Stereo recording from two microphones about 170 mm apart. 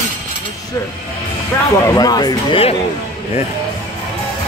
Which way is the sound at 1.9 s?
20° left (ahead or behind).